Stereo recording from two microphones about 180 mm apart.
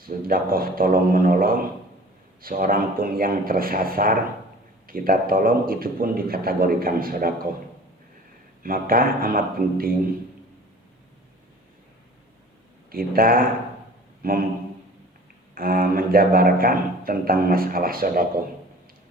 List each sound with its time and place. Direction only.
0.0 s a man's voice: 55° right (ahead or behind)
8.6 s a man's voice: 55° right (ahead or behind)
12.9 s a man's voice: 55° right (ahead or behind)
15.5 s a man's voice: 55° right (ahead or behind)